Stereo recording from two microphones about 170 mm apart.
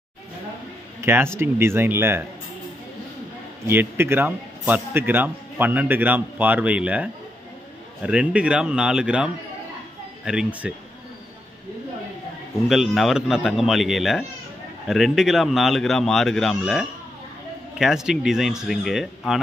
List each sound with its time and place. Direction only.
1.0 s a man's voice: 15° right (ahead or behind)
3.6 s a man's voice: 15° right (ahead or behind)
12.6 s speech: centre (ahead or behind)